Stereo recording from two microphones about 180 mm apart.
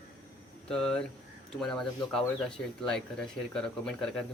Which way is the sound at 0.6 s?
5° left (ahead or behind).